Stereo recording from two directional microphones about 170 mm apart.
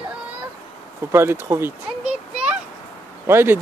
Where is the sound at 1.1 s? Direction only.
15° right (ahead or behind).